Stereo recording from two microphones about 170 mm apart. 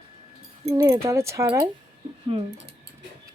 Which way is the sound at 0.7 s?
20° right (ahead or behind).